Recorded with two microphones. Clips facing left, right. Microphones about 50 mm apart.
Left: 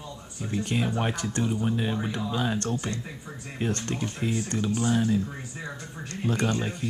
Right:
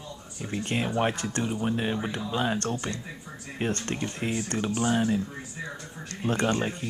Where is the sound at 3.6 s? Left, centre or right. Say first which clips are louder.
Even; right.